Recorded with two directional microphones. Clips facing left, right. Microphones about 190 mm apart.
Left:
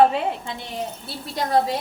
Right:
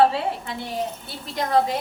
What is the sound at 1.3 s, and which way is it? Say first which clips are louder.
Speech: even; 30° left (ahead or behind).